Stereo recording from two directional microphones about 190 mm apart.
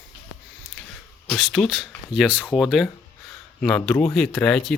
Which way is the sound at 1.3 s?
Centre (ahead or behind).